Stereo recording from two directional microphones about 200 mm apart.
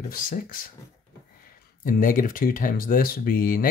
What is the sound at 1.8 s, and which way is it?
Speech, 40° left (ahead or behind).